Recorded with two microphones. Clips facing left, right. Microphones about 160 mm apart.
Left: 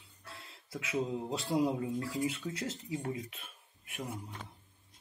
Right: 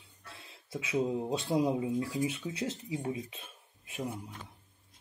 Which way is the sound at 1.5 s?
15° right (ahead or behind).